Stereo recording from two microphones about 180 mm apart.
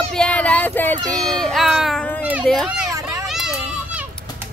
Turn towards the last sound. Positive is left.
turn(degrees=-5)  # may be behind; listen again after turning